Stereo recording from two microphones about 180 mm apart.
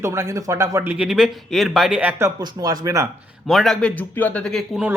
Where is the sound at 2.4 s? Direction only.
20° right (ahead or behind).